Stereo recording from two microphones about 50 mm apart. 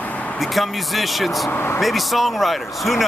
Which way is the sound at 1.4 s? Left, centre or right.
Left.